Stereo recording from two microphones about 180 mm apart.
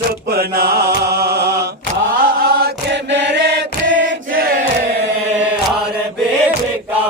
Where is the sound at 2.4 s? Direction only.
70° right (ahead or behind).